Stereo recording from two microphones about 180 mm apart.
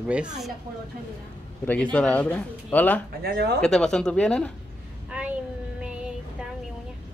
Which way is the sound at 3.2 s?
60° right (ahead or behind).